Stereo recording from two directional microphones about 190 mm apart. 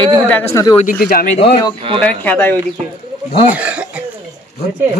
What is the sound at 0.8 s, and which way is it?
Speech, 50° left (ahead or behind).